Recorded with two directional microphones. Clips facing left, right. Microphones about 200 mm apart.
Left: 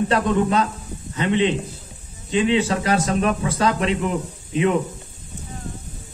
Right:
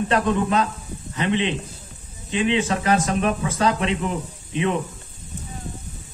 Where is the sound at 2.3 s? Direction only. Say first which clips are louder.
Left 2 dB; 35° left (ahead or behind).